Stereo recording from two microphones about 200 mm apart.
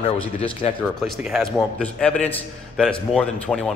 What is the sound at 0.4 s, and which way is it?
Speech, 25° left (ahead or behind).